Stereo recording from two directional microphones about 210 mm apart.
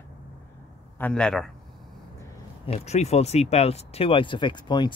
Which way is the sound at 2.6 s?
30° left (ahead or behind).